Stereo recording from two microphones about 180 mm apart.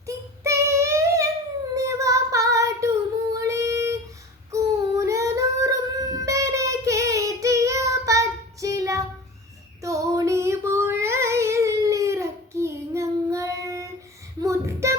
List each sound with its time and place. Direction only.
0.0 s child singing: 15° right (ahead or behind)
4.5 s music: 15° right (ahead or behind)
8.6 s child singing: 20° right (ahead or behind)